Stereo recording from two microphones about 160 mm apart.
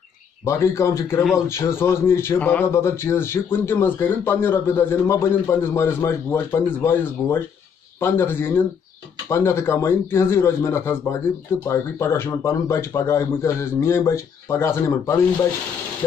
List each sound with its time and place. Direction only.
0.5 s speech: 20° left (ahead or behind)